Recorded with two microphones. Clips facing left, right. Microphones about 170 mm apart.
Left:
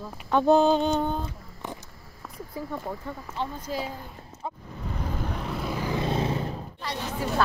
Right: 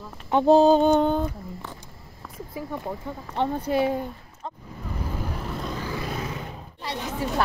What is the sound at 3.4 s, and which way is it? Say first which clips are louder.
Speech: right 9 dB; 65° right (ahead or behind).